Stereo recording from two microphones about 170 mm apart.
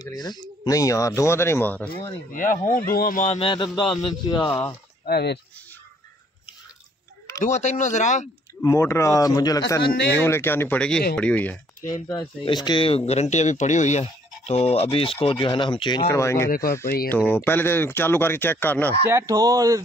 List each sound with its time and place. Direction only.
0.0 s speech: 25° left (ahead or behind)
2.3 s speech: 50° left (ahead or behind)
3.3 s speech: 30° left (ahead or behind)
4.5 s speech: 15° left (ahead or behind)
5.0 s speech: 70° left (ahead or behind)
7.4 s speech: 45° left (ahead or behind)
8.6 s speech: 15° left (ahead or behind)
10.1 s speech: 15° left (ahead or behind)
12.1 s speech: 25° left (ahead or behind)
16.1 s speech: 15° left (ahead or behind)
16.4 s speech: 60° left (ahead or behind)
17.3 s speech: 10° left (ahead or behind)
19.0 s speech: 15° right (ahead or behind)